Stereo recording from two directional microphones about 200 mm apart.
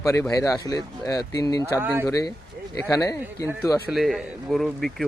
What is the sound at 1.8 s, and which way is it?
Speech, 10° right (ahead or behind).